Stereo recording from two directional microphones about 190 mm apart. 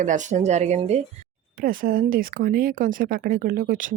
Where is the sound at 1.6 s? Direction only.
45° right (ahead or behind).